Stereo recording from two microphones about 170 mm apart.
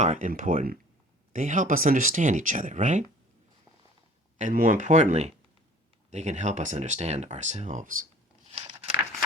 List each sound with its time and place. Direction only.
0.0 s speech: 45° right (ahead or behind)
4.4 s speech: 50° right (ahead or behind)
8.5 s a sound: 35° right (ahead or behind)